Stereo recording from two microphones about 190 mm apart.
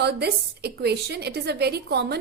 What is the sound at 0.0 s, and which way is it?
A woman's voice, 60° right (ahead or behind).